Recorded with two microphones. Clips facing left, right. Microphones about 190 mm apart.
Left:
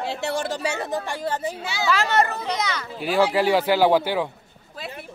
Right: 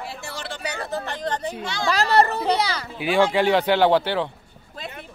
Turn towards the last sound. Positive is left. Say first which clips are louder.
# even
turn(degrees=10)  # may be behind; listen again after turning